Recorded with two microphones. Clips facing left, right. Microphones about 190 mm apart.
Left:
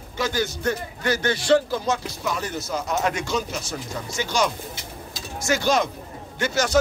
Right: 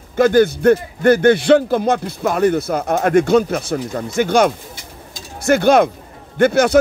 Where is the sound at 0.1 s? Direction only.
55° right (ahead or behind).